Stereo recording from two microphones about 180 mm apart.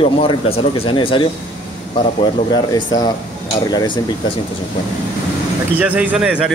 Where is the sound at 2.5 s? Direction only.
20° left (ahead or behind).